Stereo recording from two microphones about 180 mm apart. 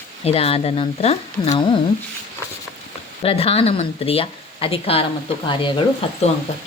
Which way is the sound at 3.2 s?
35° left (ahead or behind).